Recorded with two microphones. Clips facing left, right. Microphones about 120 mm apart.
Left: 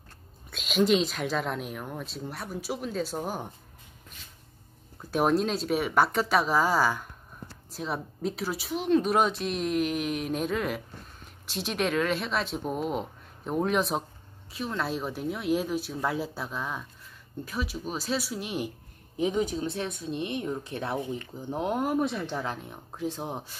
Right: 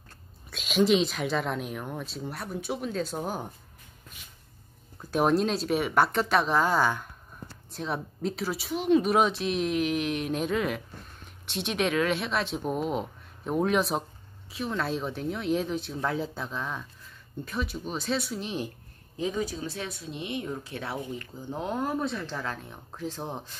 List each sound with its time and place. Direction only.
0.5 s speech: centre (ahead or behind)
5.1 s speech: centre (ahead or behind)
19.1 s speech: 20° left (ahead or behind)